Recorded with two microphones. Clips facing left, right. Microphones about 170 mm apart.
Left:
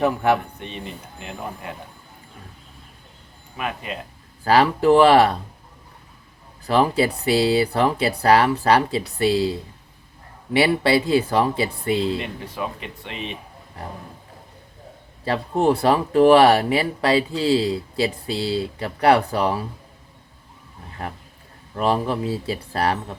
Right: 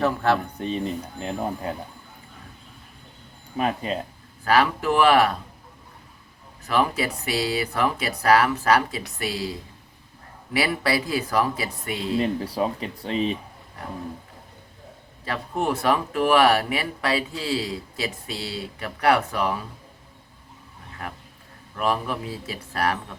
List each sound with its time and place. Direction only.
0.0 s speech: 15° left (ahead or behind)
0.6 s speech: 35° right (ahead or behind)
3.6 s speech: 35° right (ahead or behind)
4.4 s speech: 30° left (ahead or behind)
6.7 s speech: 30° left (ahead or behind)
12.2 s speech: 35° right (ahead or behind)
15.2 s speech: 30° left (ahead or behind)
21.8 s speech: 30° left (ahead or behind)